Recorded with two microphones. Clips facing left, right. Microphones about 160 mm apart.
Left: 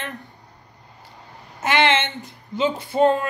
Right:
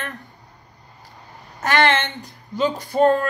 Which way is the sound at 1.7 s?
45° right (ahead or behind).